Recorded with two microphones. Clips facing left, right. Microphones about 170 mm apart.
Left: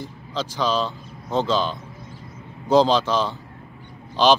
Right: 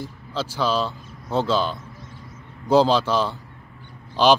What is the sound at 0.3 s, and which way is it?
Speech, 10° right (ahead or behind).